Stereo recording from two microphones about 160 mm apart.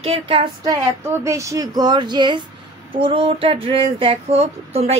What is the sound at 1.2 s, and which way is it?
Speech, 20° right (ahead or behind).